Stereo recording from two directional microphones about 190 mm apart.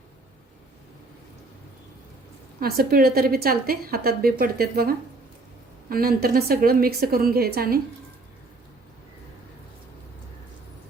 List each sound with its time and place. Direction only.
2.6 s a woman's voice: 55° right (ahead or behind)